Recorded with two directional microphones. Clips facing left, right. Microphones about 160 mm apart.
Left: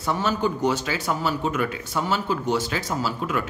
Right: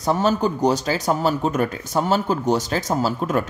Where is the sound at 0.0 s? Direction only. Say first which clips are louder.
Right 4 dB; 40° right (ahead or behind).